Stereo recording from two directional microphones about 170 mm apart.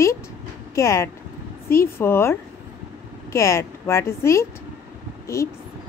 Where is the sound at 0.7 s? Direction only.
15° left (ahead or behind).